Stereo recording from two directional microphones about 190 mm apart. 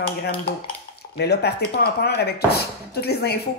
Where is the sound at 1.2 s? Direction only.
60° left (ahead or behind).